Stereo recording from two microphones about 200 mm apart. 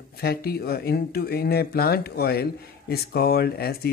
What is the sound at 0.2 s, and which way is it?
Speech, 50° left (ahead or behind).